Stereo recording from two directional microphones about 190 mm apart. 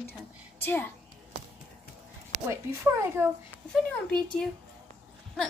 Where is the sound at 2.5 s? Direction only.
15° right (ahead or behind).